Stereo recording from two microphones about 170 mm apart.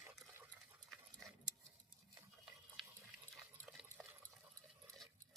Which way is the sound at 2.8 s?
Centre (ahead or behind).